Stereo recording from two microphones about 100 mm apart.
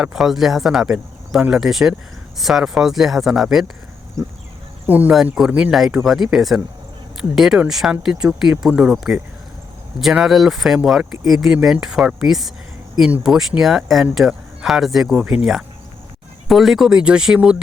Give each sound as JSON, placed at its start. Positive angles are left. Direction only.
{"t": 0.0, "sound": "speech", "side_deg": -5}
{"t": 4.2, "sound": "speech", "side_deg": -30}
{"t": 4.9, "sound": "speech", "side_deg": -15}
{"t": 5.1, "sound": "speech", "side_deg": -5}